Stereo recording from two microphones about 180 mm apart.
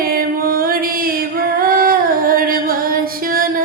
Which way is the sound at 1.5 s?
55° right (ahead or behind).